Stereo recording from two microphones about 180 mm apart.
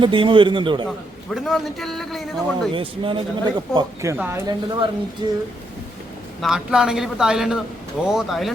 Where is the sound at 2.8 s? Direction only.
30° right (ahead or behind).